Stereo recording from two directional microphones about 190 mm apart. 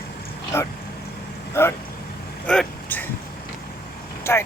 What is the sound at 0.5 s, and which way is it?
Speech, 15° left (ahead or behind).